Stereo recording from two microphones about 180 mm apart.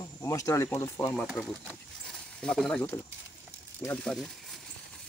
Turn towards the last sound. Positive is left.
turn(degrees=15)  # may be behind; listen again after turning